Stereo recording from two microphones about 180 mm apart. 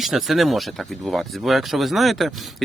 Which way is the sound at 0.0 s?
Centre (ahead or behind).